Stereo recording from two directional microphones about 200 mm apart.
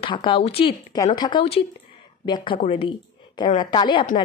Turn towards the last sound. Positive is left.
turn(degrees=25)  # may be behind; listen again after turning